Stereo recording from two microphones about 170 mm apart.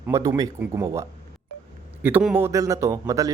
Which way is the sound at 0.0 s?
15° right (ahead or behind).